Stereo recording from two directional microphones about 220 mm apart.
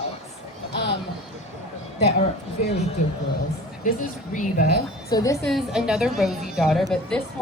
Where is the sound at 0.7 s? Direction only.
50° left (ahead or behind).